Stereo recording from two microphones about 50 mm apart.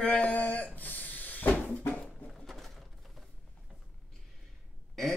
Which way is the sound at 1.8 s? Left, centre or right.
Left.